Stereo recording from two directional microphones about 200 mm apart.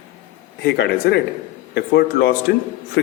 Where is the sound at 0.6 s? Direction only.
55° left (ahead or behind).